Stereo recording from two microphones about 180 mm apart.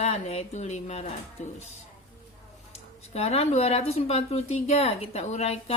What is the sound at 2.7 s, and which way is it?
Speech, 35° left (ahead or behind).